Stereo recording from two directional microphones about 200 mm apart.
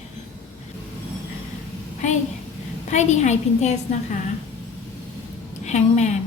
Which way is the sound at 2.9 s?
35° left (ahead or behind).